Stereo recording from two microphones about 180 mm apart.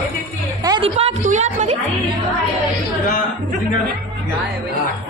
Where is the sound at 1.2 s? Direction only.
40° right (ahead or behind).